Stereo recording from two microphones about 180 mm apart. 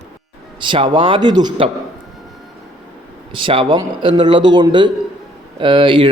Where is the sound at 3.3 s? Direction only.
30° right (ahead or behind).